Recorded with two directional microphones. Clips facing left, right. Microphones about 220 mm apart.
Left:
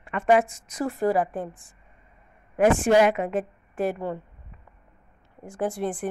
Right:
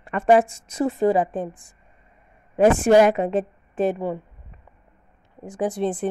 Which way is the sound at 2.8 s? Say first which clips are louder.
Right 4 dB; 40° right (ahead or behind).